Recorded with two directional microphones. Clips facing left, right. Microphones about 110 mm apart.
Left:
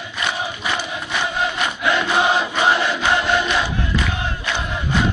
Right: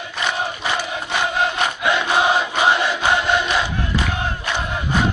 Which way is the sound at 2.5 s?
15° right (ahead or behind).